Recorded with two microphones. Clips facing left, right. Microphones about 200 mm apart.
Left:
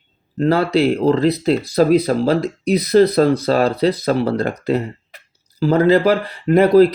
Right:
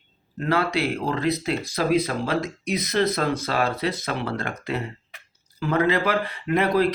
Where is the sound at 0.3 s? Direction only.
35° left (ahead or behind).